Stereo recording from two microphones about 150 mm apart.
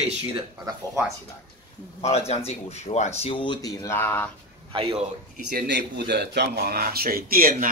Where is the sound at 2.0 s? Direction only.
45° left (ahead or behind); by 4.3 s 15° left (ahead or behind).